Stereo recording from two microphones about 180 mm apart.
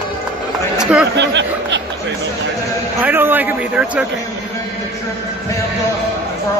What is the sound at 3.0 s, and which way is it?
A man's voice, 10° right (ahead or behind).